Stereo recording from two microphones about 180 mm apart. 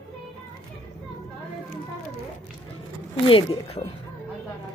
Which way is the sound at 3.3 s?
30° left (ahead or behind).